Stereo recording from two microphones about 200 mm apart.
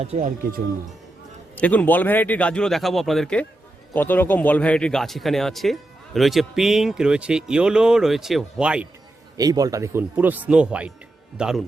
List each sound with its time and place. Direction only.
0.0 s speech: 35° right (ahead or behind)
1.5 s a man's voice: 10° left (ahead or behind)
9.4 s a man's voice: 20° right (ahead or behind); by 11.6 s centre (ahead or behind)